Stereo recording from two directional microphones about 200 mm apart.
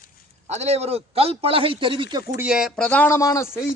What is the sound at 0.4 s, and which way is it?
A man's voice, 35° right (ahead or behind).